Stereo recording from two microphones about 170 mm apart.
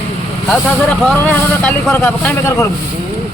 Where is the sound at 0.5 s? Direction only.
5° left (ahead or behind).